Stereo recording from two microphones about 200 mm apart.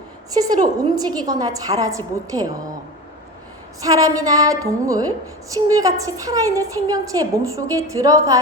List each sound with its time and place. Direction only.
0.3 s a woman's voice: 20° right (ahead or behind)
3.8 s a woman's voice: 15° right (ahead or behind)